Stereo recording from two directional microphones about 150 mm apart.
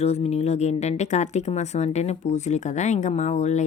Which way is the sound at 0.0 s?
45° left (ahead or behind).